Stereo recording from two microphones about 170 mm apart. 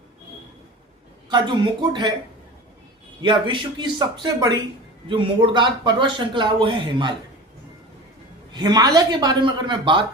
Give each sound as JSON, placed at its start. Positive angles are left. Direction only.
{"t": 1.3, "sound": "speech", "side_deg": -25}
{"t": 3.2, "sound": "speech", "side_deg": -30}
{"t": 8.5, "sound": "speech", "side_deg": -25}